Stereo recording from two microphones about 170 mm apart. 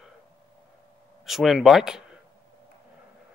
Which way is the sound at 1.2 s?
Centre (ahead or behind).